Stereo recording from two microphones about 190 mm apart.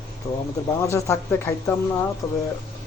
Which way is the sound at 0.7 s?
15° left (ahead or behind).